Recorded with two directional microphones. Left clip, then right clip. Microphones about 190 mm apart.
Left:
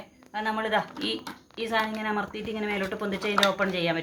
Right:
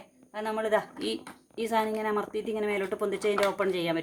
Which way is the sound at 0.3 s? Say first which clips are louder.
Left 1 dB; 65° right (ahead or behind).